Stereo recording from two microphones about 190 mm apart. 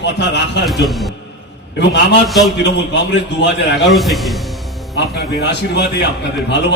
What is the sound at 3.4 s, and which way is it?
Speech, 65° left (ahead or behind).